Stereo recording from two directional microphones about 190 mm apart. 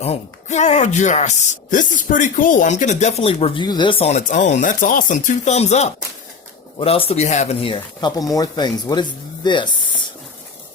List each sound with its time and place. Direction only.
0.0 s speech: 35° left (ahead or behind)